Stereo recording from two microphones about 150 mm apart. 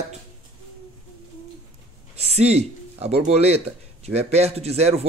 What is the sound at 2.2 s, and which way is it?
Speech, 45° right (ahead or behind).